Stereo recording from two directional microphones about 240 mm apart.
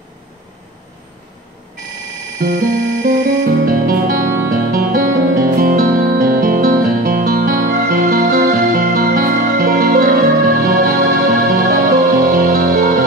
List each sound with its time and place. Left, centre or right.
2.4 s music: right